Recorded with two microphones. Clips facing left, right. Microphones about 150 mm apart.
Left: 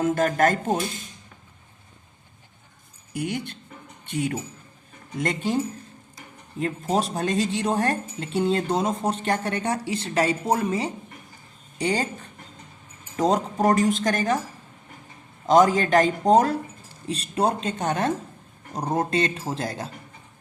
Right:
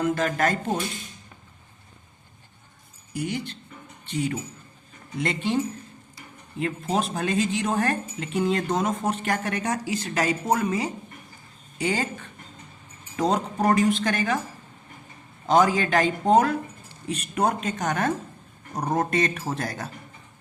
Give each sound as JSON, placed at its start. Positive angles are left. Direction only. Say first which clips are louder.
{"t": 0.0, "sound": "speech", "louder": "left 3 dB", "side_deg": 45}
{"t": 3.1, "sound": "speech", "louder": "left 1 dB", "side_deg": 50}
{"t": 6.6, "sound": "a woman's voice", "louder": "left 1 dB", "side_deg": 40}
{"t": 13.3, "sound": "speech", "louder": "left 1 dB", "side_deg": 45}
{"t": 15.4, "sound": "a woman's voice", "louder": "left 3 dB", "side_deg": 40}